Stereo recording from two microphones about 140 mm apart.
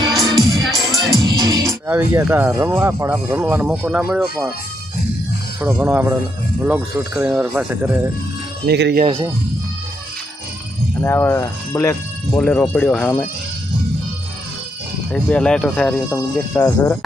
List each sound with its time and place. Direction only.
0.1 s music: centre (ahead or behind)
1.2 s music: 25° right (ahead or behind)
1.9 s speech: 20° right (ahead or behind)
5.5 s speech: 15° right (ahead or behind)
8.7 s speech: 90° right
11.0 s speech: 15° left (ahead or behind)
15.1 s speech: 5° left (ahead or behind)
16.0 s speech: 20° left (ahead or behind)